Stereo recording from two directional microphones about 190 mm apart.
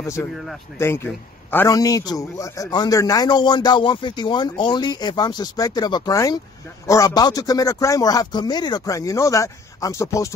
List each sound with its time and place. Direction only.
0.0 s a man's voice: 15° left (ahead or behind)